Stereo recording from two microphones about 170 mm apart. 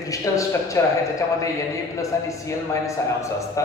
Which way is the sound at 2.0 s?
20° left (ahead or behind).